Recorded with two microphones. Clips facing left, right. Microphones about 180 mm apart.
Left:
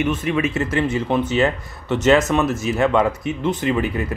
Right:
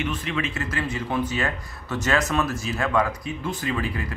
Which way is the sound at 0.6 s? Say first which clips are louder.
Left 8 dB; 25° left (ahead or behind).